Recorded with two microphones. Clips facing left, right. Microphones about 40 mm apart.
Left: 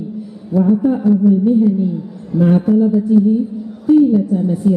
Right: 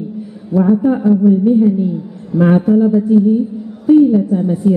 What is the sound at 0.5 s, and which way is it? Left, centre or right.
A man's voice, centre.